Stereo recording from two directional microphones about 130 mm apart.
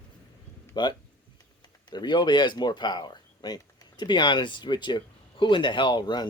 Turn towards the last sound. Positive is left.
turn(degrees=35)  # may be behind; listen again after turning